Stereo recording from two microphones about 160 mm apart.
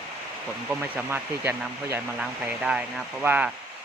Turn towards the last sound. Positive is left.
turn(degrees=-10)  # may be behind; listen again after turning